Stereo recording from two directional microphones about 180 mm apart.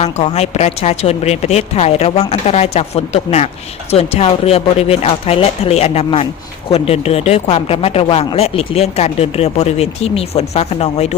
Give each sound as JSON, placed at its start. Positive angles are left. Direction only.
{"t": 0.0, "sound": "speech", "side_deg": 35}